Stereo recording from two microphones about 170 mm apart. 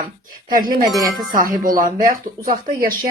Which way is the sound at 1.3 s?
55° right (ahead or behind).